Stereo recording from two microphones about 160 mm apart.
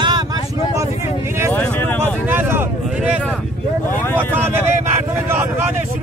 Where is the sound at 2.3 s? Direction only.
15° right (ahead or behind).